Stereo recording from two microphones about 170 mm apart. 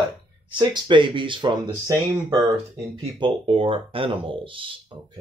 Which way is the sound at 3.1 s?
30° right (ahead or behind).